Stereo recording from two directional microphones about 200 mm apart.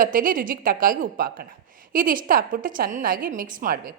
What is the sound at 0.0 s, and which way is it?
A woman's voice, 45° right (ahead or behind).